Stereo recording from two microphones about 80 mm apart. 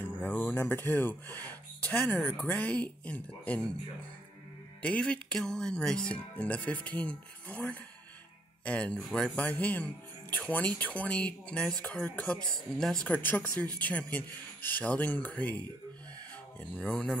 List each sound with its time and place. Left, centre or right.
0.0 s a sound: left
0.5 s a man's voice: left
4.8 s a man's voice: centre
13.1 s a man's voice: left
16.7 s speech: centre